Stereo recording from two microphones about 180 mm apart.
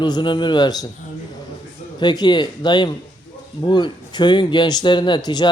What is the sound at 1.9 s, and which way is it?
Speech, 25° left (ahead or behind).